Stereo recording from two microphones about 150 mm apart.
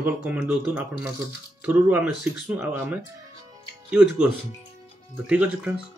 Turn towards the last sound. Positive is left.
turn(degrees=-10)  # may be behind; listen again after turning